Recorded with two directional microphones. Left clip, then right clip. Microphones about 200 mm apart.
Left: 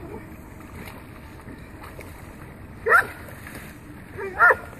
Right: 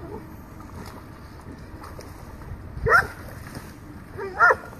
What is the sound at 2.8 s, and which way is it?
Dog, 10° left (ahead or behind).